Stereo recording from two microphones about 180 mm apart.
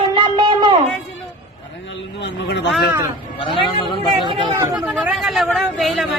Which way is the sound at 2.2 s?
80° left.